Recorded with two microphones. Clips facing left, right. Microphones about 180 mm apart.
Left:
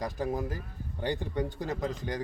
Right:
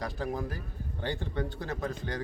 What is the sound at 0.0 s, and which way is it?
A man's voice, 15° left (ahead or behind).